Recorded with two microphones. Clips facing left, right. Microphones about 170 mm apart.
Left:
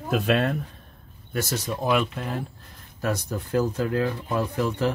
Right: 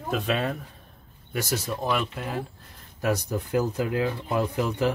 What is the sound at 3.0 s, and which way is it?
Speech, 15° right (ahead or behind).